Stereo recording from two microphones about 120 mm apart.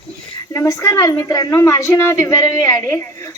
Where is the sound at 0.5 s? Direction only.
25° left (ahead or behind).